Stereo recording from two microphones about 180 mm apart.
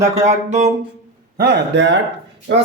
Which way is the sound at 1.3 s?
60° right (ahead or behind).